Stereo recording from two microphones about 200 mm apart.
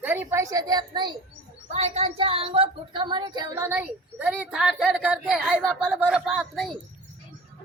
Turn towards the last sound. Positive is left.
turn(degrees=0)  # may be behind; listen again after turning